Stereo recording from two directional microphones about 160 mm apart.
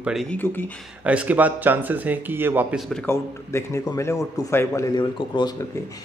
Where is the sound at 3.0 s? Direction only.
15° left (ahead or behind).